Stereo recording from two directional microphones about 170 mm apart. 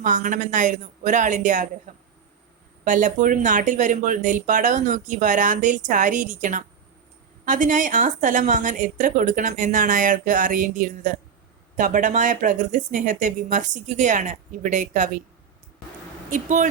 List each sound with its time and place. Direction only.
0.0 s speech: 50° right (ahead or behind)
2.8 s speech: 50° right (ahead or behind)
16.3 s speech: 45° right (ahead or behind)